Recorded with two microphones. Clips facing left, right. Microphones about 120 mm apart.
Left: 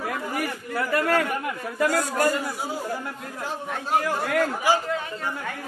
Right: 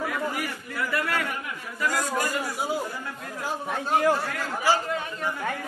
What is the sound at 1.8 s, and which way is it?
Speech, 45° left (ahead or behind).